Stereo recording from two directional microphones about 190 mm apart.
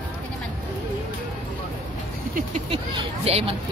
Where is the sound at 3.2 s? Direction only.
30° right (ahead or behind).